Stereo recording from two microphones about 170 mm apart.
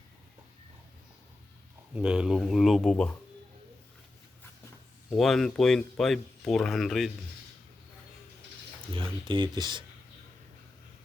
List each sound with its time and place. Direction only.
2.0 s speech: 5° right (ahead or behind)
5.1 s speech: centre (ahead or behind)
8.9 s speech: 30° right (ahead or behind)